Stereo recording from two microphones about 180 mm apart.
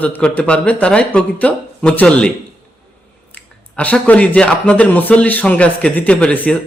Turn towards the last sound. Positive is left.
turn(degrees=5)  # may be behind; listen again after turning